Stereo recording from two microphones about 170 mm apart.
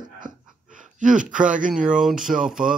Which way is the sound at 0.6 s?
50° right (ahead or behind).